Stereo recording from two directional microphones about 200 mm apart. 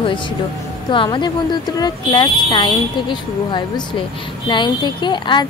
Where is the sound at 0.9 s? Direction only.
25° left (ahead or behind).